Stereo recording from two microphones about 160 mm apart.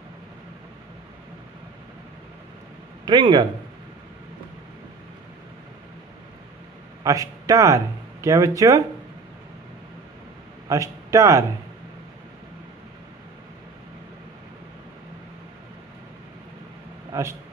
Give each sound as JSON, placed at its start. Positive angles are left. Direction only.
{"t": 3.1, "sound": "speech", "side_deg": -30}
{"t": 7.0, "sound": "a man's voice", "side_deg": -20}
{"t": 10.7, "sound": "a man's voice", "side_deg": -20}
{"t": 17.1, "sound": "speech", "side_deg": -20}